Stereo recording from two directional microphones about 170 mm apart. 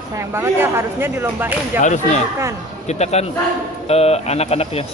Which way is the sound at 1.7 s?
45° left (ahead or behind).